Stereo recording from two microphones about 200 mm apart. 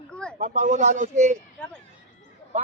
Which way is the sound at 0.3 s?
35° right (ahead or behind).